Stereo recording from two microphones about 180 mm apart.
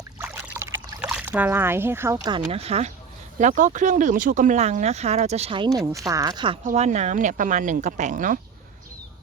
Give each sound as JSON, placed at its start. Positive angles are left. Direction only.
{"t": 0.2, "sound": "a sound", "side_deg": -15}
{"t": 2.5, "sound": "speech", "side_deg": -35}
{"t": 6.7, "sound": "speech", "side_deg": -40}